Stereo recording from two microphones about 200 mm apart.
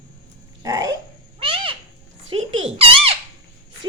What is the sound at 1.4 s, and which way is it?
Owl, 25° right (ahead or behind).